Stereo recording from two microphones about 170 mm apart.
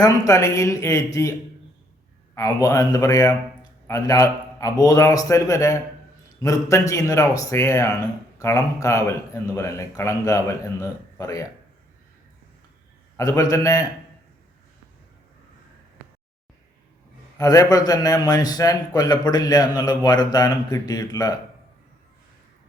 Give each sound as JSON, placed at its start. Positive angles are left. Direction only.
{"t": 0.0, "sound": "a man's voice", "side_deg": 20}
{"t": 13.1, "sound": "a man's voice", "side_deg": 20}
{"t": 17.3, "sound": "a man's voice", "side_deg": 20}